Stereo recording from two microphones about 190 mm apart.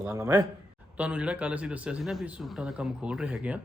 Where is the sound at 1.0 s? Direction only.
5° right (ahead or behind).